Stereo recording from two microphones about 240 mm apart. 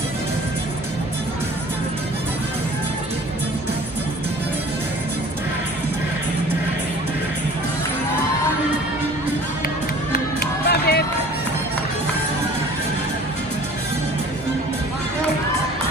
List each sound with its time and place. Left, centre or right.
10.7 s music: left